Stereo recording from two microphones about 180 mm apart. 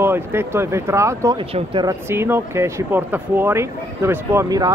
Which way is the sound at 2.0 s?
15° right (ahead or behind).